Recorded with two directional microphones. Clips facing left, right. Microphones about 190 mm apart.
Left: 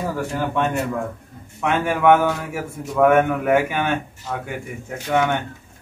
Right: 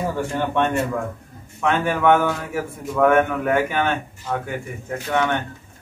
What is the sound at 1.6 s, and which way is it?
A man's voice, 10° left (ahead or behind).